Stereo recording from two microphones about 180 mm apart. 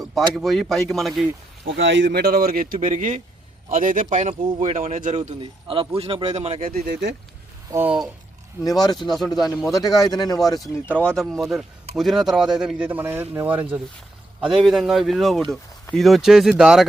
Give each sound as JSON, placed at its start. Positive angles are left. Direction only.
{"t": 0.0, "sound": "a sound", "side_deg": 0}
{"t": 0.3, "sound": "speech", "side_deg": 0}
{"t": 1.6, "sound": "speech", "side_deg": -85}
{"t": 2.7, "sound": "a man's voice", "side_deg": -40}
{"t": 4.4, "sound": "speech", "side_deg": -30}
{"t": 5.1, "sound": "speech", "side_deg": -30}
{"t": 6.7, "sound": "speech", "side_deg": -55}
{"t": 7.7, "sound": "speech", "side_deg": -10}
{"t": 8.6, "sound": "a man's voice", "side_deg": 20}
{"t": 10.8, "sound": "speech", "side_deg": 5}